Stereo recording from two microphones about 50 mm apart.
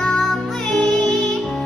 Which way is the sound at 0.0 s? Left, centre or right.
Centre.